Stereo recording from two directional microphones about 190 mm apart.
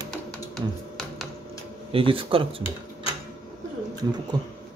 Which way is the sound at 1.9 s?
30° right (ahead or behind).